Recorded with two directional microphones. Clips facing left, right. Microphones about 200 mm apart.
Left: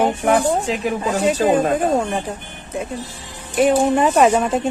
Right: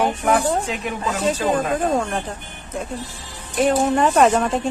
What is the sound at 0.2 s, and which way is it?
Speech, 30° left (ahead or behind).